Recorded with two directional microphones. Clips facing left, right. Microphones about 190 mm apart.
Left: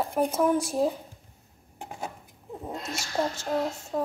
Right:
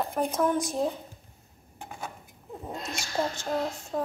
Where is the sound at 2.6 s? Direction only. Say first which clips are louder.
Left 1 dB; 5° left (ahead or behind).